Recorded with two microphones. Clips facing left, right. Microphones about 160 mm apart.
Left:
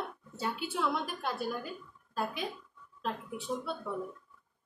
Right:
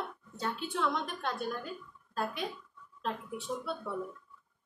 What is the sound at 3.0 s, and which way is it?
Speech, centre (ahead or behind).